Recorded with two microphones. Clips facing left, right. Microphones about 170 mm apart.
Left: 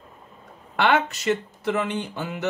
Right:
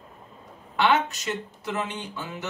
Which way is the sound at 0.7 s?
55° left (ahead or behind).